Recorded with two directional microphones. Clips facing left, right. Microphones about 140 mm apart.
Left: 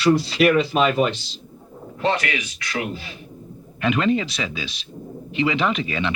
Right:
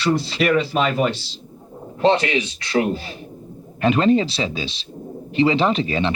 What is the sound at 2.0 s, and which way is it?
A man's voice, 25° right (ahead or behind).